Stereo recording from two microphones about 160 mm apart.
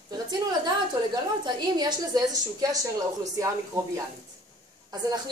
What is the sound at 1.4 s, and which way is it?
A woman's voice, 25° right (ahead or behind).